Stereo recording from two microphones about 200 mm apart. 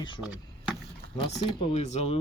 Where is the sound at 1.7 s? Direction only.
35° left (ahead or behind).